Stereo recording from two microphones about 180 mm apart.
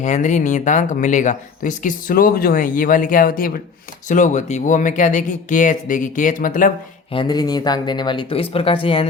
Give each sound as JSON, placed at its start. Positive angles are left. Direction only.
{"t": 0.0, "sound": "speech", "side_deg": 40}
{"t": 7.1, "sound": "speech", "side_deg": 25}